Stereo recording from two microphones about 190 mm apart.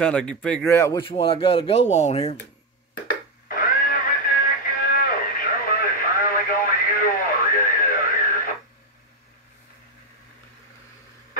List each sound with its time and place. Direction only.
0.0 s speech: 5° left (ahead or behind)
1.0 s speech: 30° left (ahead or behind)
3.4 s radio: 50° left (ahead or behind)